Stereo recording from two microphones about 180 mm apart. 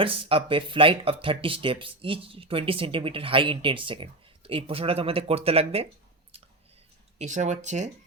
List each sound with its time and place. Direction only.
0.0 s speech: 30° right (ahead or behind)
6.3 s a sound: 35° right (ahead or behind)
7.2 s speech: 40° right (ahead or behind)